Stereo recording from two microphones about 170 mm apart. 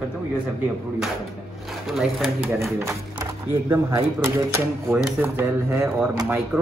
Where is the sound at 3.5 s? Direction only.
15° right (ahead or behind).